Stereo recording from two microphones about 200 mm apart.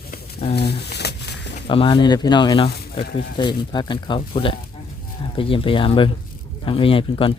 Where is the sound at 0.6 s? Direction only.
55° left (ahead or behind).